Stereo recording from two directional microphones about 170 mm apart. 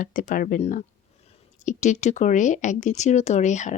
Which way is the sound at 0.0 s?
50° left (ahead or behind).